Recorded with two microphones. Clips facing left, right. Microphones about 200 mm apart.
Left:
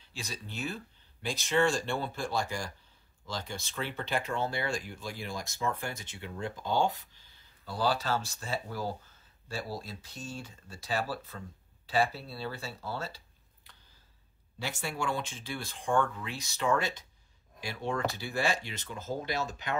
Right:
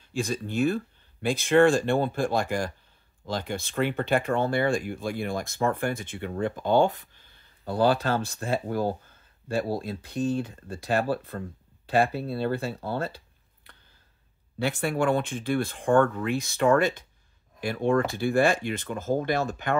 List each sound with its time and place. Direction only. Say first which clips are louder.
0.0 s speech: right 14 dB; 50° right (ahead or behind)
13.7 s a sound: right 5 dB; 55° right (ahead or behind)
14.6 s speech: right 10 dB; 55° right (ahead or behind)